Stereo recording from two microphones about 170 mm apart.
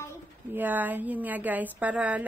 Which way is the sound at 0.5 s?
10° right (ahead or behind).